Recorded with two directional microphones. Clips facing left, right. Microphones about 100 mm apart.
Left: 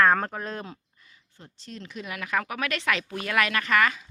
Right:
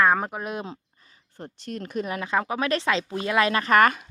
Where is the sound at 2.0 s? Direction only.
30° right (ahead or behind); by 4.1 s 50° right (ahead or behind).